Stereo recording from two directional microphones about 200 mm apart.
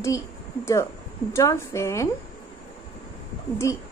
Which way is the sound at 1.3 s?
15° left (ahead or behind).